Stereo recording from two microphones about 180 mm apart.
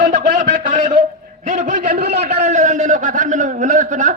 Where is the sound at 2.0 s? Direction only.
60° right (ahead or behind).